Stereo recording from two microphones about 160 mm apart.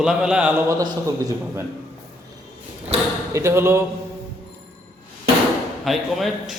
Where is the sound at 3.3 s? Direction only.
15° right (ahead or behind).